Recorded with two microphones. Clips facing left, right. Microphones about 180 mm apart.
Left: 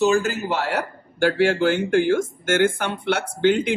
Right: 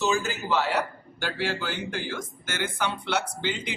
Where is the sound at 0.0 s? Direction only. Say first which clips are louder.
Left 7 dB; 60° left (ahead or behind).